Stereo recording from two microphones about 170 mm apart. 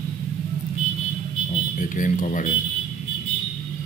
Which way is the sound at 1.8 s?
50° left (ahead or behind).